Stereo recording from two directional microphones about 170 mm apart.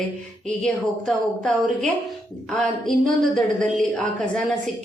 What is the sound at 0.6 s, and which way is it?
A woman's voice, 5° left (ahead or behind).